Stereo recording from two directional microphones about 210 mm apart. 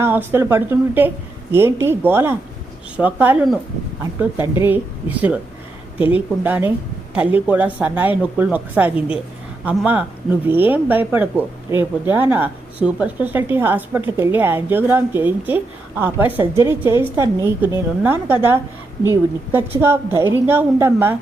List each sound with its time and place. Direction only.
0.0 s speech: 10° right (ahead or behind)
4.6 s speech: 10° right (ahead or behind)